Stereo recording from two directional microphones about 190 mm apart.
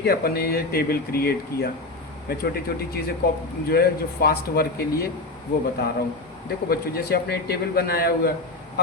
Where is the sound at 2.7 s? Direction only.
55° left (ahead or behind).